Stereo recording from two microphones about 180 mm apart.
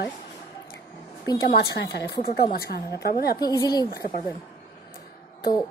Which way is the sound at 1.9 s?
60° left (ahead or behind).